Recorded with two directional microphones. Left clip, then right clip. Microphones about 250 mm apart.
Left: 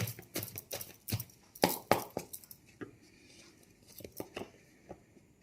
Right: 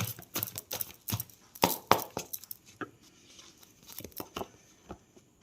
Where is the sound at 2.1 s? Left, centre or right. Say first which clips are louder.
Right 2 dB; centre.